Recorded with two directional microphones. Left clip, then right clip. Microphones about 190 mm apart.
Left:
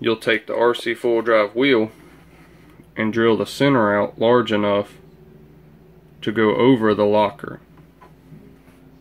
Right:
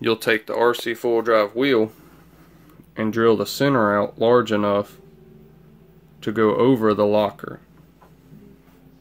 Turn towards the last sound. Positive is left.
turn(degrees=-10)  # may be behind; listen again after turning